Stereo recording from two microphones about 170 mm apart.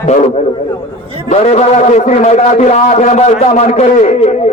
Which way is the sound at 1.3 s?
40° left (ahead or behind).